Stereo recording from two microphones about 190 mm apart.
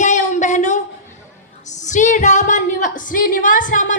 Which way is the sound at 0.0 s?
40° left (ahead or behind).